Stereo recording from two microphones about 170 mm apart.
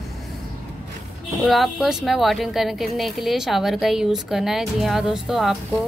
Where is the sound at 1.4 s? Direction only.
Centre (ahead or behind).